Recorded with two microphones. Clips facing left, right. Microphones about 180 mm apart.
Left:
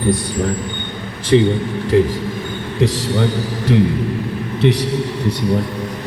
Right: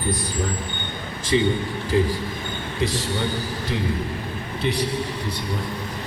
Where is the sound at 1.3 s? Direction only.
55° left (ahead or behind).